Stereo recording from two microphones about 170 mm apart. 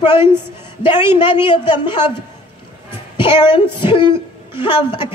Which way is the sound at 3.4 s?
25° left (ahead or behind).